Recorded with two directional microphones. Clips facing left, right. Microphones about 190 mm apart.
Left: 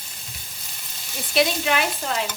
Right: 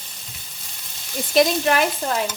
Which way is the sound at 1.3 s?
45° right (ahead or behind).